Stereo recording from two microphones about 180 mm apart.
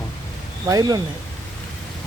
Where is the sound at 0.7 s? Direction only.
20° right (ahead or behind).